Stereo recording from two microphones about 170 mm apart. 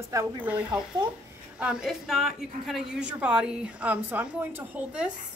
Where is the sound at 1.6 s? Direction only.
5° right (ahead or behind).